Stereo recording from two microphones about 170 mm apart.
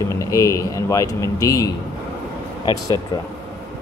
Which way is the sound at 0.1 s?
20° left (ahead or behind).